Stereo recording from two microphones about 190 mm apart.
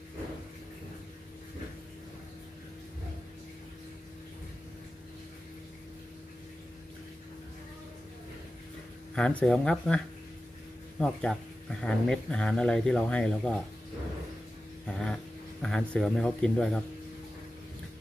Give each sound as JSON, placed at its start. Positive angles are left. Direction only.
{"t": 9.1, "sound": "speech", "side_deg": 5}
{"t": 14.9, "sound": "a sound", "side_deg": 0}
{"t": 15.6, "sound": "speech", "side_deg": 0}